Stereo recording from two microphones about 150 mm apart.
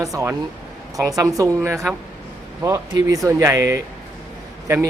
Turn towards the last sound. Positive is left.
turn(degrees=-15)  # may be behind; listen again after turning